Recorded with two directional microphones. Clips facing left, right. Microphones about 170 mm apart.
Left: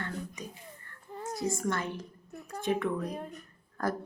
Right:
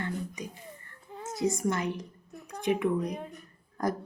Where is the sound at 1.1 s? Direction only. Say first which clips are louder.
Left 1 dB; centre (ahead or behind).